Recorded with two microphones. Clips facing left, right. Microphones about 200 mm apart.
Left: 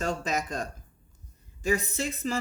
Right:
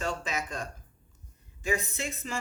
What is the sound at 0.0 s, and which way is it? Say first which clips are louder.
A woman's voice: left 4 dB; 40° left (ahead or behind).